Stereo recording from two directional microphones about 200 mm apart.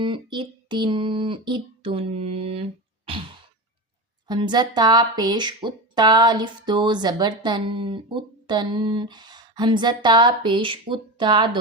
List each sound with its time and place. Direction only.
0.0 s speech: 25° right (ahead or behind)
3.1 s sigh: 25° right (ahead or behind)
4.3 s speech: 20° right (ahead or behind)